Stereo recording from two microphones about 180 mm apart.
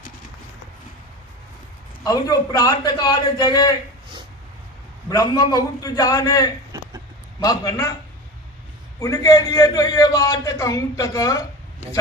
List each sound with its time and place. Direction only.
2.0 s a man's voice: 20° left (ahead or behind)
5.0 s a man's voice: 20° left (ahead or behind)
6.7 s a sound: 20° right (ahead or behind)
7.4 s a man's voice: 20° left (ahead or behind)
9.0 s a man's voice: 20° left (ahead or behind)